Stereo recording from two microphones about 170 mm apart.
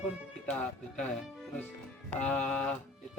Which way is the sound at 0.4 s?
5° left (ahead or behind).